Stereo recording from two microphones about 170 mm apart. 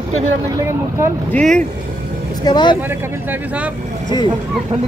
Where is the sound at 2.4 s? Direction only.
25° left (ahead or behind).